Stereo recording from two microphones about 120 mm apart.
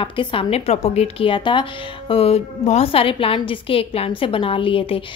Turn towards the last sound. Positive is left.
turn(degrees=50)  # may be behind; listen again after turning